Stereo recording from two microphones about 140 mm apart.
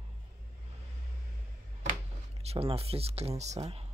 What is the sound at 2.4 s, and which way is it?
Speech, 45° right (ahead or behind).